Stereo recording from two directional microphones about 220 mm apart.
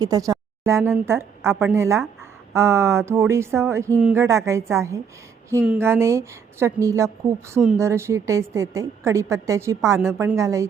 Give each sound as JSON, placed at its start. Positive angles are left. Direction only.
{"t": 0.0, "sound": "a woman's voice", "side_deg": -15}